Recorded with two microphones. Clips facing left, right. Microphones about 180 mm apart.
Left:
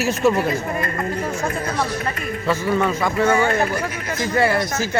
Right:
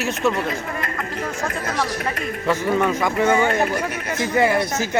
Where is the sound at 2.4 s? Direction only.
15° right (ahead or behind).